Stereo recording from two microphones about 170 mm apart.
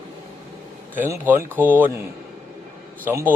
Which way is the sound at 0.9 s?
15° right (ahead or behind).